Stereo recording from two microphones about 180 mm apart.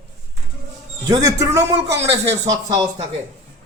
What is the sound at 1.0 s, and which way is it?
Speech, 20° right (ahead or behind).